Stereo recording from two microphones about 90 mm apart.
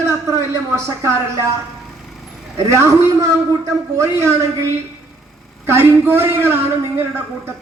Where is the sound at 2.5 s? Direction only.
35° right (ahead or behind).